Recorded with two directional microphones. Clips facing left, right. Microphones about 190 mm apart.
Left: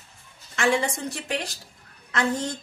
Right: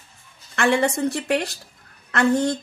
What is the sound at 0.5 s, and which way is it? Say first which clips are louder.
A woman's voice: right 4 dB; 60° right (ahead or behind).